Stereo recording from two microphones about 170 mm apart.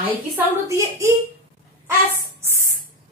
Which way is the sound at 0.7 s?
15° right (ahead or behind).